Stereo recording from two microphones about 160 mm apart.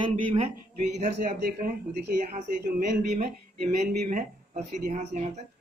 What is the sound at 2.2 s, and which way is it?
Speech, 60° right (ahead or behind).